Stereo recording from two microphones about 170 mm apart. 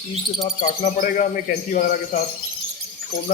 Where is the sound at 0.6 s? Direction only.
50° left (ahead or behind).